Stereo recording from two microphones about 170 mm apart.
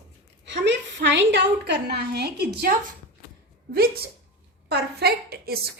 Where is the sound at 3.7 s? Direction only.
65° right (ahead or behind).